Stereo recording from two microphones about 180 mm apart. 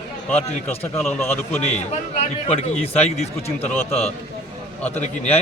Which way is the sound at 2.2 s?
35° left (ahead or behind).